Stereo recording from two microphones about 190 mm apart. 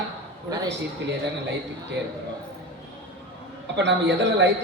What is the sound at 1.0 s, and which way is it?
Speech, 65° right (ahead or behind).